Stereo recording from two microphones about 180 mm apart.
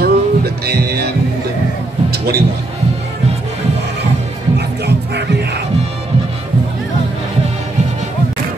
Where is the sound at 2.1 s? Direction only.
65° right (ahead or behind).